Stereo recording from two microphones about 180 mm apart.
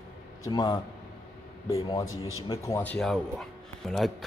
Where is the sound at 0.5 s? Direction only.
25° left (ahead or behind).